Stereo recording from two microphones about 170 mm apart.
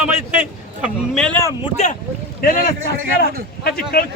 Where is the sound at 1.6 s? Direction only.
40° left (ahead or behind).